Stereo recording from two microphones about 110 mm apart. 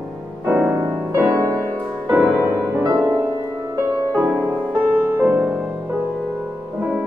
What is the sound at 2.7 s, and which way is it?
Music, 30° right (ahead or behind).